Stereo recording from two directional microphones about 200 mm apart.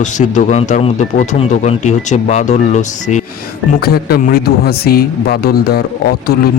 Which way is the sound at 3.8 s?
50° left (ahead or behind).